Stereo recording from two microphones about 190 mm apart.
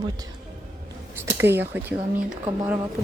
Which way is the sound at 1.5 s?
65° right (ahead or behind).